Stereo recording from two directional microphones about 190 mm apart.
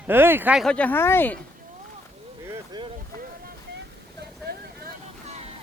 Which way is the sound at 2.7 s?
25° right (ahead or behind).